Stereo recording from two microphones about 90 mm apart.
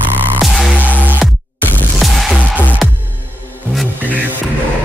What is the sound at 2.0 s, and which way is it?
Music, centre (ahead or behind).